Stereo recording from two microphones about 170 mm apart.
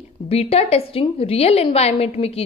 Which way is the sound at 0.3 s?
35° left (ahead or behind).